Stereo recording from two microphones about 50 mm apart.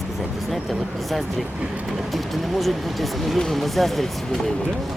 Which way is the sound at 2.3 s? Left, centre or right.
Centre.